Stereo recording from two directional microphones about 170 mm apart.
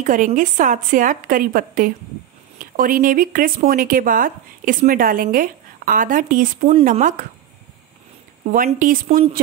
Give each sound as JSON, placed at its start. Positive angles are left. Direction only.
{"t": 0.0, "sound": "a woman's voice", "side_deg": -50}
{"t": 8.5, "sound": "a woman's voice", "side_deg": -50}